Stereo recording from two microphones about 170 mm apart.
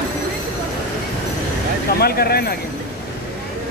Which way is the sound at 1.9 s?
65° left (ahead or behind).